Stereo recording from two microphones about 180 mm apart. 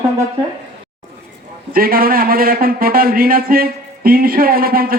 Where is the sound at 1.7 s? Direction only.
55° right (ahead or behind).